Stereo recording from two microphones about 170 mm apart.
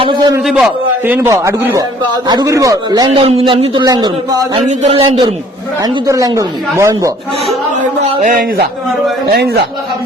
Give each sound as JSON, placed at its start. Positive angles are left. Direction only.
{"t": 0.0, "sound": "speech", "side_deg": -30}
{"t": 0.4, "sound": "a man's voice", "side_deg": 0}
{"t": 1.0, "sound": "speech", "side_deg": -10}
{"t": 4.5, "sound": "speech", "side_deg": -45}
{"t": 4.9, "sound": "speech", "side_deg": -30}
{"t": 8.2, "sound": "a man's voice", "side_deg": -55}
{"t": 9.3, "sound": "a man's voice", "side_deg": -70}